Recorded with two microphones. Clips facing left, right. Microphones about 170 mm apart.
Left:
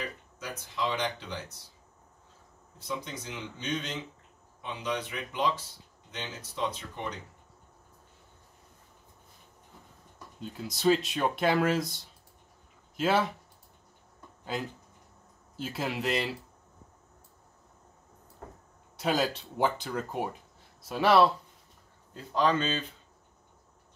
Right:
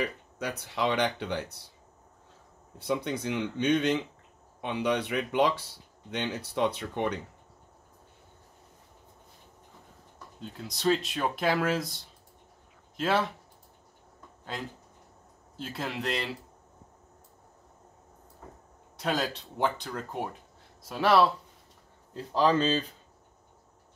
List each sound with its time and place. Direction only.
0.0 s speech: 65° right (ahead or behind)
2.8 s speech: 60° right (ahead or behind)
10.4 s speech: centre (ahead or behind)
14.4 s speech: 5° left (ahead or behind)
18.9 s speech: centre (ahead or behind)
22.1 s speech: 30° right (ahead or behind)